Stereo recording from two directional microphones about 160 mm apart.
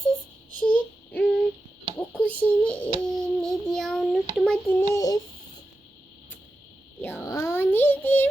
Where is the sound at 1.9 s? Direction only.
10° left (ahead or behind).